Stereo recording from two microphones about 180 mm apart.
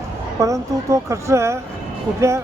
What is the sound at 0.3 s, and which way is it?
Speech, 15° right (ahead or behind).